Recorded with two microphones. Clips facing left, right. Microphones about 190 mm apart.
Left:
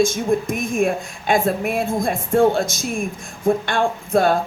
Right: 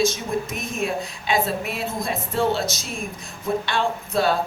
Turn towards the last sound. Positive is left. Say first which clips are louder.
# left 4 dB
turn(degrees=50)  # may be behind; listen again after turning